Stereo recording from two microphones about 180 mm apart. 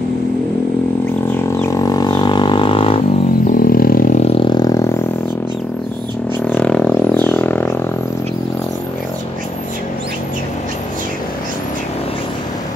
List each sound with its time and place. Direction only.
1.3 s didgeridoo: 15° left (ahead or behind)
3.4 s a sound: 50° left (ahead or behind)
4.2 s vehicle: 30° left (ahead or behind)
6.4 s music: 5° left (ahead or behind)